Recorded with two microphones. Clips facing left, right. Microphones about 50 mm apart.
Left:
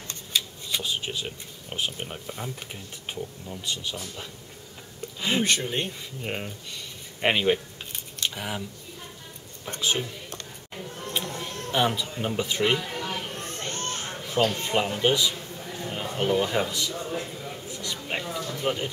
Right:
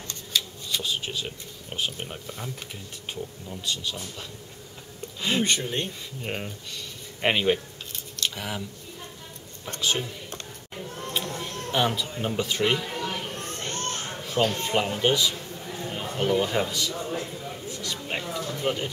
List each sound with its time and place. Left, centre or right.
0.1 s speech: centre
3.1 s speech: centre
5.4 s speech: centre
8.2 s scissors: centre
9.7 s a woman's voice: centre
10.7 s a sound: centre
11.7 s a man's voice: centre
13.6 s children playing: centre
14.0 s a sound: centre
14.6 s a man's voice: centre
17.1 s a sound: centre
18.4 s a man's voice: centre